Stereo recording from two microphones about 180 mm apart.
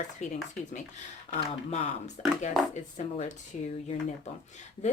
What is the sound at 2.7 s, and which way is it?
Speech, 40° left (ahead or behind).